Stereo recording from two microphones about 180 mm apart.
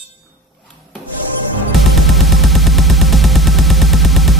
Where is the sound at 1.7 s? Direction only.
Centre (ahead or behind).